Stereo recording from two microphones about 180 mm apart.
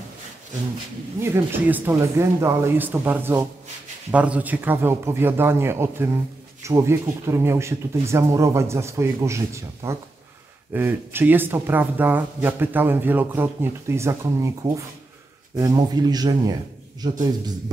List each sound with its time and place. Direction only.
1.2 s speech: 10° right (ahead or behind)